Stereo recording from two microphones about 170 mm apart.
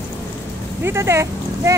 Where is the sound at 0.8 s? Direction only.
15° right (ahead or behind).